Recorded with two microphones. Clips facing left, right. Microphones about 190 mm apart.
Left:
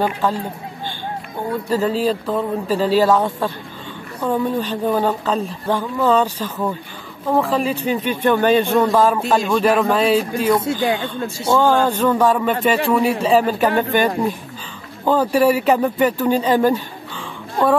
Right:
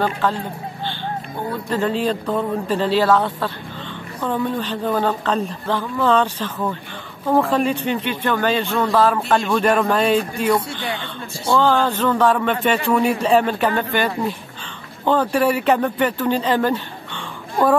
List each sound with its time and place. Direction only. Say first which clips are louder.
0.0 s speech: left 1 dB; 10° left (ahead or behind)
1.7 s speech: left 2 dB; 5° left (ahead or behind)
7.9 s speech: left 4 dB; 15° left (ahead or behind)
9.2 s speech: left 1 dB; 5° left (ahead or behind)